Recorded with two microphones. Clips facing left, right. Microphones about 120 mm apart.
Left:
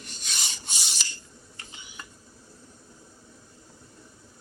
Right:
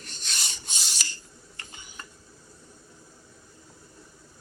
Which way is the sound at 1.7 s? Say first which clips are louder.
Even; 45° right (ahead or behind).